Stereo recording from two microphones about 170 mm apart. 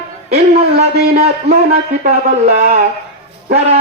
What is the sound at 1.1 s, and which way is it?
A man's voice, 40° right (ahead or behind).